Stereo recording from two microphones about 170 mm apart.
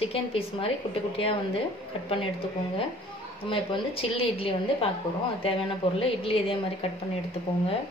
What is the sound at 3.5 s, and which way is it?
A woman's voice, 30° left (ahead or behind).